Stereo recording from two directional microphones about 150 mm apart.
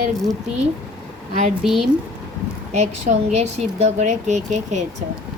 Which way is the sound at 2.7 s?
45° right (ahead or behind).